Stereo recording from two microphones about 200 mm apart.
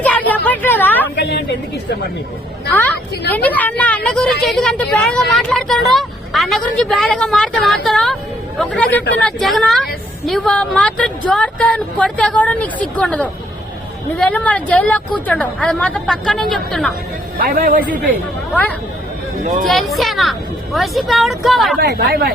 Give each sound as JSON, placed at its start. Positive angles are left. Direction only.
{"t": 0.0, "sound": "a sound", "side_deg": 10}
{"t": 1.1, "sound": "a sound", "side_deg": 55}
{"t": 2.7, "sound": "speech", "side_deg": 10}
{"t": 17.3, "sound": "a man's voice", "side_deg": -50}
{"t": 19.6, "sound": "speech", "side_deg": 0}
{"t": 21.8, "sound": "a man's voice", "side_deg": -55}